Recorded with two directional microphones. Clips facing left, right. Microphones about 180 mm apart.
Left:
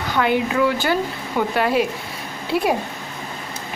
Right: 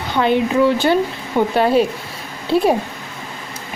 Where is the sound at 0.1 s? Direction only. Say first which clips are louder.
Right 4 dB; 25° right (ahead or behind).